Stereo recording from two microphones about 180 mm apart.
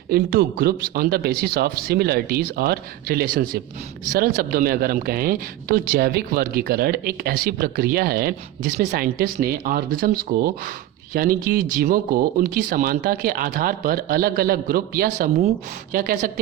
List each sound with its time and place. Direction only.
0.1 s speech: 55° right (ahead or behind)